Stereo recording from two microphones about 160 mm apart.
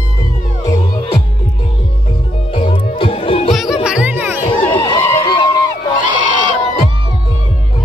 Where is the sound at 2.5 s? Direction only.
35° left (ahead or behind).